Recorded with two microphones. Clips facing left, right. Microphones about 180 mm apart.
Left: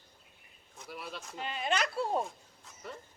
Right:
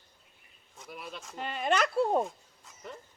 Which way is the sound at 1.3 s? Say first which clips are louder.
Right 4 dB; 50° right (ahead or behind).